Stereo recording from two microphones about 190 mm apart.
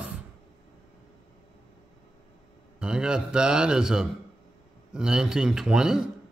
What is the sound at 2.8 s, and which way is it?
A man's voice, 5° right (ahead or behind).